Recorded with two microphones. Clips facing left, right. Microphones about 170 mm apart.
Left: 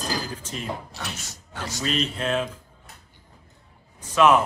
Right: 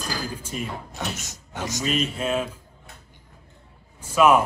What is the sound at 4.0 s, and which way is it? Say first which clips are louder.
Speech: right 1 dB; 10° right (ahead or behind).